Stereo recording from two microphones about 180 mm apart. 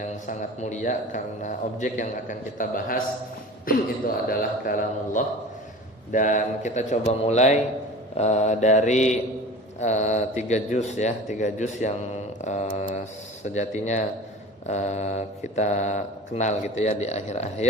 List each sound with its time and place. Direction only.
0.0 s a man's voice: 45° left (ahead or behind)
4.3 s a man's voice: 50° left (ahead or behind)